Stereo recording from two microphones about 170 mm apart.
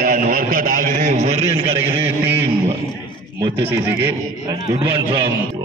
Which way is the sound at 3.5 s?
10° right (ahead or behind).